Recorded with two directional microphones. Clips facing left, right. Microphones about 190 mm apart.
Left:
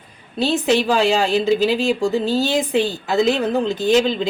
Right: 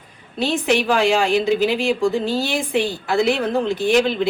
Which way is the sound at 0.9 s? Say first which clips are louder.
Even; 15° right (ahead or behind).